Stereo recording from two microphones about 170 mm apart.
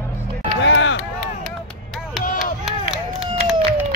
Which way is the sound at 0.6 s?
90° left.